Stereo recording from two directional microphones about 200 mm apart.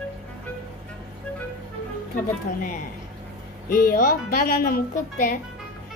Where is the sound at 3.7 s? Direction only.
45° left (ahead or behind).